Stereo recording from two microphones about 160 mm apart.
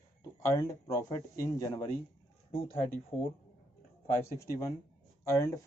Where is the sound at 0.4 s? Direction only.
20° left (ahead or behind).